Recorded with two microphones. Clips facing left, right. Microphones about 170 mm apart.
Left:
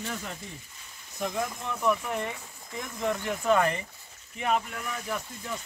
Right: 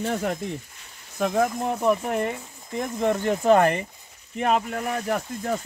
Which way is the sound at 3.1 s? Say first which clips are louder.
Right 7 dB; 40° right (ahead or behind).